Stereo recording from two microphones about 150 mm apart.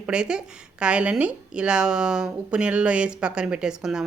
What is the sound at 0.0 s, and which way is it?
Speech, 5° right (ahead or behind).